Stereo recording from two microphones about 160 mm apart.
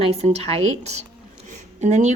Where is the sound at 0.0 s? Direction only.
40° right (ahead or behind).